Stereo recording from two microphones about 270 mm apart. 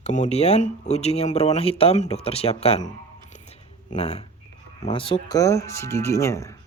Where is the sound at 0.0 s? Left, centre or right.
Left.